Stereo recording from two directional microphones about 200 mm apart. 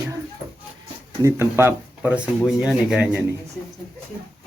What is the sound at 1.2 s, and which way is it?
Speech, 15° right (ahead or behind).